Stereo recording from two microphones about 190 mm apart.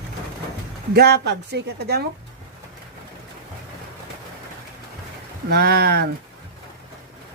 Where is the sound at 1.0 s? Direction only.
60° right (ahead or behind).